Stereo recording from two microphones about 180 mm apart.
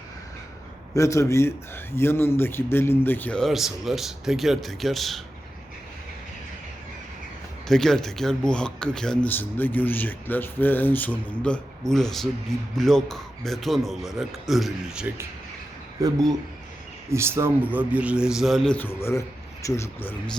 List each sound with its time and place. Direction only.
0.9 s a man's voice: 15° left (ahead or behind); by 5.2 s centre (ahead or behind)
7.7 s speech: 5° left (ahead or behind)
16.0 s a man's voice: 20° right (ahead or behind); by 20.3 s 10° left (ahead or behind)